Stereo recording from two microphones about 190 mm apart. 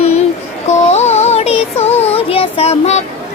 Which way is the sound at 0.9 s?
35° left (ahead or behind).